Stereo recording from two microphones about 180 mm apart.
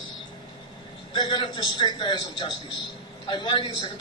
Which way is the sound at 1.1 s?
25° left (ahead or behind).